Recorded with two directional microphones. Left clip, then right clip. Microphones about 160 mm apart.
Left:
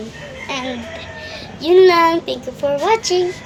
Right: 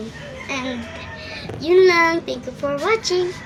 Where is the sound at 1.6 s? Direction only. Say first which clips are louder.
Left 3 dB; 15° right (ahead or behind).